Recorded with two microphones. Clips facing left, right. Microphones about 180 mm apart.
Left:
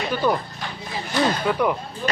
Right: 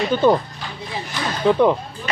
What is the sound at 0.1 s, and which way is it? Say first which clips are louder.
Speech: right 6 dB; 25° right (ahead or behind).